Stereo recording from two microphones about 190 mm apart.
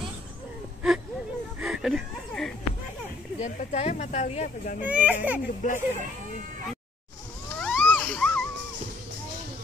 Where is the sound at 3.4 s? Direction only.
35° left (ahead or behind).